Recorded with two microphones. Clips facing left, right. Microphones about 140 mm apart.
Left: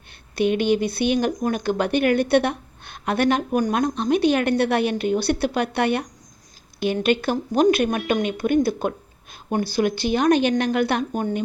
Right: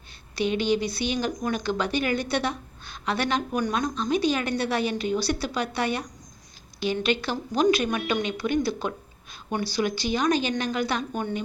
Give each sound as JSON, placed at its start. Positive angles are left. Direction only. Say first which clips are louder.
{"t": 0.3, "sound": "a woman's voice", "louder": "left 5 dB", "side_deg": 55}